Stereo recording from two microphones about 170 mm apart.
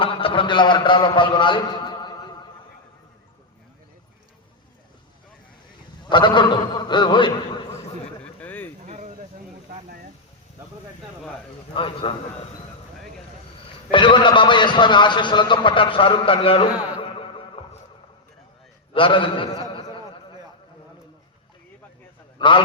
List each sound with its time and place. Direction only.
0.0 s a man's voice: 30° left (ahead or behind)
6.1 s a man's voice: 25° left (ahead or behind)
8.2 s a sound: 10° left (ahead or behind)
11.7 s a man's voice: 30° left (ahead or behind)
13.9 s a man's voice: 30° left (ahead or behind)
17.0 s music: 35° left (ahead or behind)
18.9 s a man's voice: 30° left (ahead or behind)
22.4 s a man's voice: 30° left (ahead or behind)